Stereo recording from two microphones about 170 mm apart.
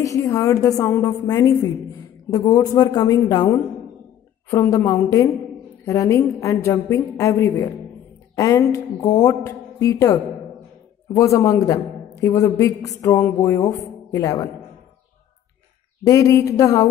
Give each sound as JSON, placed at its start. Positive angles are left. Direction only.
{"t": 0.0, "sound": "a woman's voice", "side_deg": 20}
{"t": 4.5, "sound": "a woman's voice", "side_deg": 15}
{"t": 11.1, "sound": "a woman's voice", "side_deg": 15}
{"t": 16.0, "sound": "a woman's voice", "side_deg": 20}